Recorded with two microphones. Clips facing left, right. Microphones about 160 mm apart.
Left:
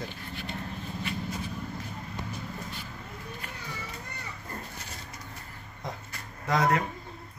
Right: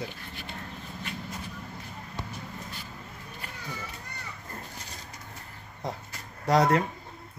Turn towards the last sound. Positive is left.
turn(degrees=-30)  # may be behind; listen again after turning